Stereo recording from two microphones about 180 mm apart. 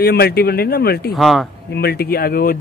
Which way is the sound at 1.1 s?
Centre (ahead or behind).